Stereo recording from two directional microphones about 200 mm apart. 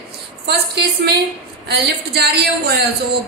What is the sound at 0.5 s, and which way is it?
A woman's voice, 55° right (ahead or behind).